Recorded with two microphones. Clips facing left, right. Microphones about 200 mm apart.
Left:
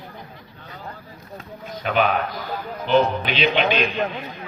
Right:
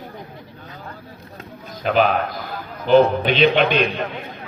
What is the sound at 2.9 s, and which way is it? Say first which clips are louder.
Speech: right 5 dB; 50° right (ahead or behind).